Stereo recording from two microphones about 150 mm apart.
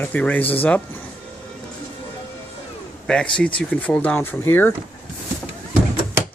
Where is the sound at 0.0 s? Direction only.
10° left (ahead or behind).